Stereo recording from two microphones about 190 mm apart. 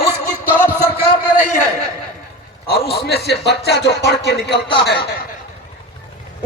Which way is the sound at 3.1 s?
60° left (ahead or behind).